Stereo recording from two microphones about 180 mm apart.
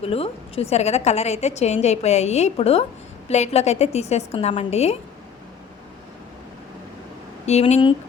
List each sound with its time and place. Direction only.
0.0 s a woman's voice: 30° left (ahead or behind)
7.4 s a woman's voice: 35° left (ahead or behind)